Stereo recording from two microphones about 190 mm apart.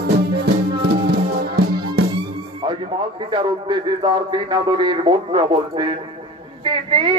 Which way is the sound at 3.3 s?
25° right (ahead or behind).